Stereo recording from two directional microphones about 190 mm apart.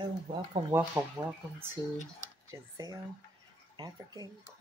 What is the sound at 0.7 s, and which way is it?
Speech, 10° right (ahead or behind).